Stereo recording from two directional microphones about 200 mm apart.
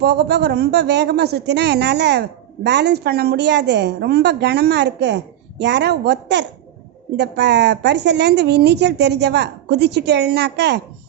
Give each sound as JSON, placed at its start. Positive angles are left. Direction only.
{"t": 0.0, "sound": "a woman's voice", "side_deg": -55}